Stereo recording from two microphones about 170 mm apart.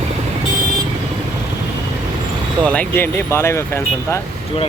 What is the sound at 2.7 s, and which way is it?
Speech, 10° left (ahead or behind).